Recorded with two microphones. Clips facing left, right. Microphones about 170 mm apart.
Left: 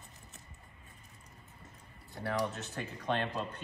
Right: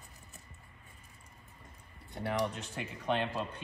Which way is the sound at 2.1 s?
20° right (ahead or behind).